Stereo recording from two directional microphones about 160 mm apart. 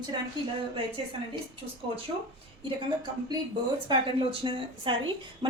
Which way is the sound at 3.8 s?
30° right (ahead or behind).